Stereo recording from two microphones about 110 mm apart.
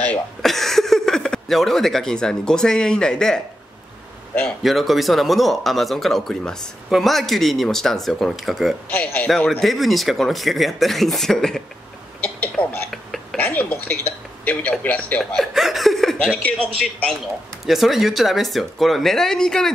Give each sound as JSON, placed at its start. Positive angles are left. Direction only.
{"t": 0.0, "sound": "speech", "side_deg": 10}
{"t": 4.6, "sound": "speech", "side_deg": 0}
{"t": 8.8, "sound": "speech", "side_deg": 15}
{"t": 9.5, "sound": "speech", "side_deg": 0}
{"t": 12.2, "sound": "a sound", "side_deg": 15}
{"t": 12.9, "sound": "a sound", "side_deg": 0}
{"t": 13.4, "sound": "a sound", "side_deg": 15}
{"t": 14.4, "sound": "speech", "side_deg": 15}
{"t": 15.1, "sound": "chuckle", "side_deg": 0}
{"t": 16.8, "sound": "speech", "side_deg": 5}